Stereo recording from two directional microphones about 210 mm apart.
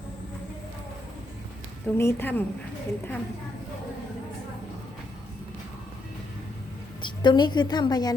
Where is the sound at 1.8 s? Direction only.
10° left (ahead or behind).